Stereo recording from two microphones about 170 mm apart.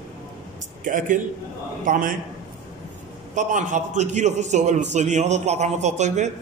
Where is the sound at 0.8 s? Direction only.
50° right (ahead or behind).